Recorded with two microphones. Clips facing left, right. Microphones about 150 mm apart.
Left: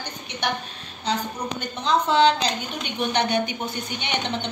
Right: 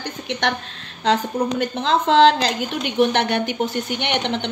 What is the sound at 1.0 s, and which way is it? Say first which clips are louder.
A woman's voice: right 7 dB; 90° right.